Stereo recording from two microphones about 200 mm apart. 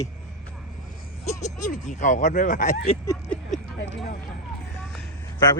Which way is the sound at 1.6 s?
35° left (ahead or behind).